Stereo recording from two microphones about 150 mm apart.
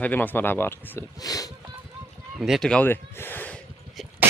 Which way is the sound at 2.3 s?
5° right (ahead or behind).